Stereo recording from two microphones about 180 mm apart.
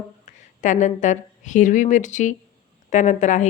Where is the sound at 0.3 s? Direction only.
45° left (ahead or behind).